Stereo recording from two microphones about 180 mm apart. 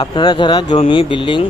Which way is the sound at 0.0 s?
25° left (ahead or behind).